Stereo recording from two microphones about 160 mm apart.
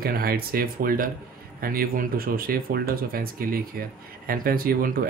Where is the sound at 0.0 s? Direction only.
70° right (ahead or behind).